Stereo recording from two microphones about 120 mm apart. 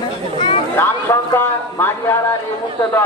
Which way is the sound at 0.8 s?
15° left (ahead or behind).